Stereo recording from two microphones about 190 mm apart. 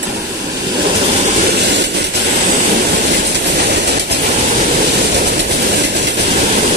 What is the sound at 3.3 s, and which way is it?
Train, 60° right (ahead or behind).